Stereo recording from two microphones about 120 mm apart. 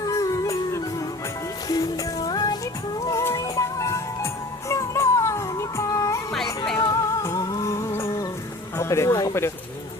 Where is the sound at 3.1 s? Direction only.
25° left (ahead or behind).